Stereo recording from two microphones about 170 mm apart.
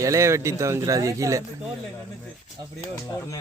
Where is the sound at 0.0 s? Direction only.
20° right (ahead or behind).